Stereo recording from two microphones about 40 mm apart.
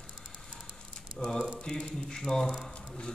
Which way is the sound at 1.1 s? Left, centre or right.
Centre.